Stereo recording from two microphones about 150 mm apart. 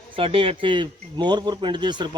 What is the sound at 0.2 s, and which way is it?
Speech, 35° right (ahead or behind).